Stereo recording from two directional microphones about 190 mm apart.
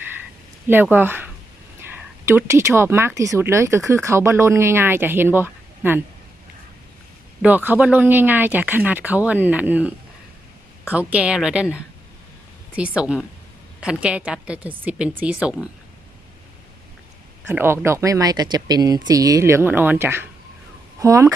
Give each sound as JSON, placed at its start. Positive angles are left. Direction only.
{"t": 0.7, "sound": "speech", "side_deg": -10}
{"t": 7.4, "sound": "a woman's voice", "side_deg": -10}
{"t": 13.0, "sound": "a woman's voice", "side_deg": -5}
{"t": 17.5, "sound": "speech", "side_deg": -10}